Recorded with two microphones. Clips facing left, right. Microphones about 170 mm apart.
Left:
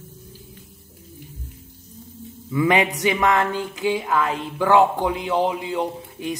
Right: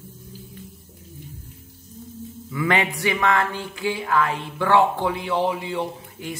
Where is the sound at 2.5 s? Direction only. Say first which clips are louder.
Left 4 dB; 20° left (ahead or behind).